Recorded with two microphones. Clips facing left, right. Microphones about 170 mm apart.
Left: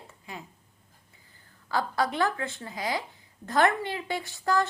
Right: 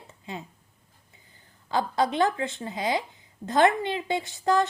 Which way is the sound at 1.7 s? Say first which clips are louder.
Right 3 dB; 20° right (ahead or behind).